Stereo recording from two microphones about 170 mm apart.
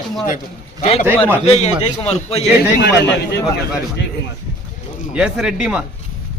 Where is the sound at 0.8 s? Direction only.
35° left (ahead or behind).